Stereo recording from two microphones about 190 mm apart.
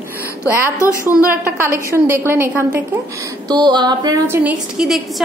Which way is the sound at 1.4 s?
15° right (ahead or behind).